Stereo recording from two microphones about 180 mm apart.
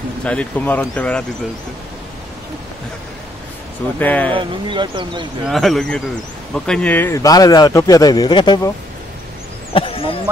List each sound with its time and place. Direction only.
0.2 s speech: 5° left (ahead or behind)
4.0 s speech: 10° left (ahead or behind)
4.3 s speech: 30° right (ahead or behind)
5.4 s speech: centre (ahead or behind); by 10.1 s 30° left (ahead or behind)